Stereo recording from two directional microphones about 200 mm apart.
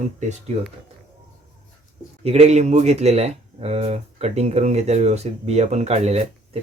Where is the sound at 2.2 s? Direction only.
35° right (ahead or behind).